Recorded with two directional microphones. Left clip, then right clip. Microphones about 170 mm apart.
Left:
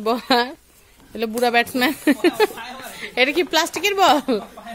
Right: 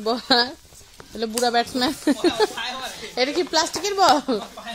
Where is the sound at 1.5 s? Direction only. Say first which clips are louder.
Left 3 dB; 35° left (ahead or behind).